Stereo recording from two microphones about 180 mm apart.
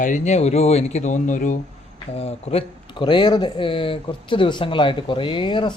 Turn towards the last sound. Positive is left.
turn(degrees=25)  # may be behind; listen again after turning